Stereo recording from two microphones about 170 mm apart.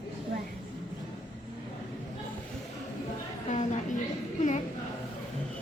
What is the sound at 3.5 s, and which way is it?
A woman's voice, 45° left (ahead or behind).